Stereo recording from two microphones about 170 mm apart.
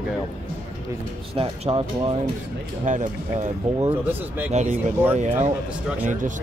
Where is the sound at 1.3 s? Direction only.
35° right (ahead or behind).